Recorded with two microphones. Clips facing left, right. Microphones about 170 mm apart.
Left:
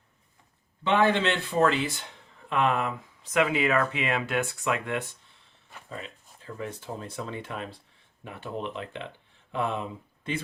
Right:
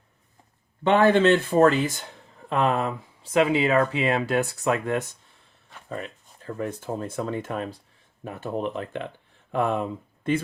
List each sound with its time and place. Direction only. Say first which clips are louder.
0.9 s speech: right 6 dB; 45° right (ahead or behind)
6.4 s speech: right 6 dB; 50° right (ahead or behind)